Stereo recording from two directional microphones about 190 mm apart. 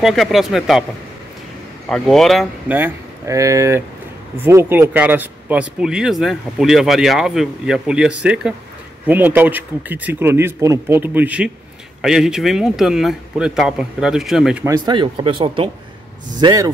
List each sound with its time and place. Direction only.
0.0 s speech: centre (ahead or behind)
1.9 s speech: 5° left (ahead or behind)
2.7 s speech: 15° right (ahead or behind)
14.6 s speech: 20° right (ahead or behind)